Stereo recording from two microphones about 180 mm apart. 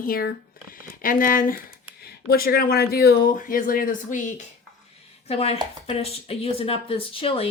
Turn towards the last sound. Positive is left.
turn(degrees=30)  # may be behind; listen again after turning